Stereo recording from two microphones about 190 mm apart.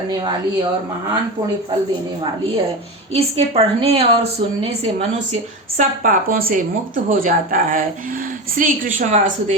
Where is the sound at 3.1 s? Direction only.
30° right (ahead or behind).